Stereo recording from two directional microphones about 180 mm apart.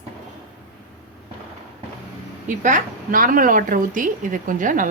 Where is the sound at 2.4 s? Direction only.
45° right (ahead or behind).